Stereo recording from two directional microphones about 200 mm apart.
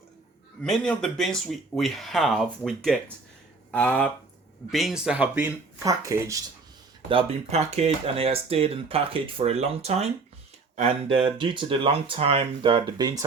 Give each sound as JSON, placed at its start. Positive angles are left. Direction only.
{"t": 0.6, "sound": "speech", "side_deg": 5}
{"t": 7.1, "sound": "speech", "side_deg": -30}